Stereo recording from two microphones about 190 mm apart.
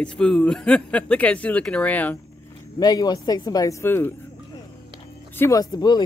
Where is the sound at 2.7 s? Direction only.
20° left (ahead or behind).